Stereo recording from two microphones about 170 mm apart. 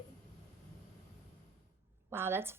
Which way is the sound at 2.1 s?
15° right (ahead or behind).